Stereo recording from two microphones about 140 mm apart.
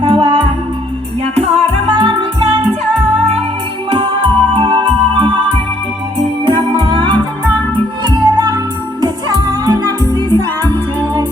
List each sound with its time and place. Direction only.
0.0 s music: 35° right (ahead or behind)
1.6 s music: 35° right (ahead or behind)
3.8 s organ: 40° right (ahead or behind)
6.4 s music: 35° right (ahead or behind)